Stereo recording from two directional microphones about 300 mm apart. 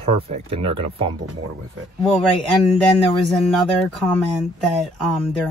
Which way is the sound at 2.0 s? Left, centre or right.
Centre.